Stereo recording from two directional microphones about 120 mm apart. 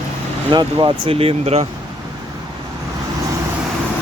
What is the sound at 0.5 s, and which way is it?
Speech, 40° right (ahead or behind).